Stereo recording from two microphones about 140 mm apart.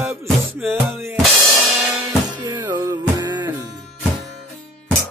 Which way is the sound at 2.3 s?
30° right (ahead or behind).